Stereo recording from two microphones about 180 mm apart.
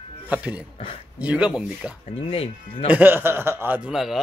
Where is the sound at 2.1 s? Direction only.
30° left (ahead or behind).